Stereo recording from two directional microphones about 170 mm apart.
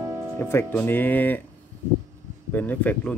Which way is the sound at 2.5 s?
10° left (ahead or behind).